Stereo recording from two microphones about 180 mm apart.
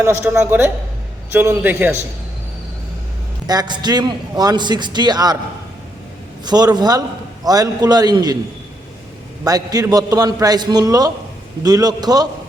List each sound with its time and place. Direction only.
0.0 s a woman's voice: 15° right (ahead or behind)
3.4 s a man's voice: 20° right (ahead or behind)
6.4 s a man's voice: 20° right (ahead or behind)
9.4 s a man's voice: 20° right (ahead or behind)